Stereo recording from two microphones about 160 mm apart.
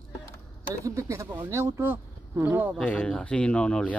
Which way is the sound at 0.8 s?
20° right (ahead or behind).